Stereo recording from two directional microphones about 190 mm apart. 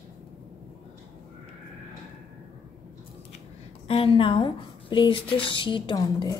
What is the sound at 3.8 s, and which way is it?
A woman's voice, 30° left (ahead or behind).